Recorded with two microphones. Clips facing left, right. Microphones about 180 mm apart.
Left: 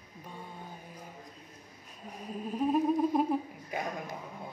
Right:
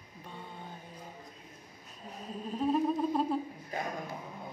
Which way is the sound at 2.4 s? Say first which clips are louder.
Left 1 dB; 10° left (ahead or behind).